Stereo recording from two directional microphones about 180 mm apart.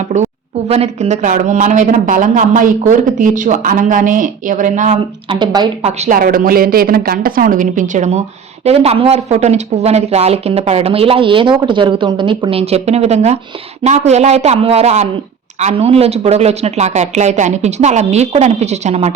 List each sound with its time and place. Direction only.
0.1 s a sound: 40° right (ahead or behind)
0.7 s a man's voice: 35° right (ahead or behind)
5.3 s speech: 25° right (ahead or behind)
5.8 s speech: 35° right (ahead or behind)
6.1 s a man's voice: 50° right (ahead or behind)